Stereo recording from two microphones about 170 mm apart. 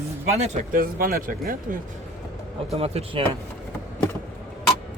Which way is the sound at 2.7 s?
35° right (ahead or behind).